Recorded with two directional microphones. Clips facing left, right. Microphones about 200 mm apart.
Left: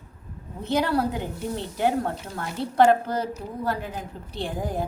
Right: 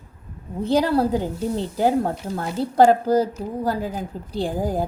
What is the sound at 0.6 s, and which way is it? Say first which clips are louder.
Speech: right 5 dB; 30° right (ahead or behind).